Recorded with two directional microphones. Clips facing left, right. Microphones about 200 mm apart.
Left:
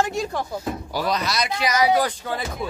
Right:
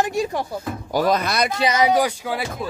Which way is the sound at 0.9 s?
50° right (ahead or behind).